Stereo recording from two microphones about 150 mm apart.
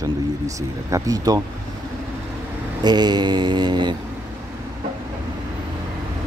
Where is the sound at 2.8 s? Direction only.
30° right (ahead or behind).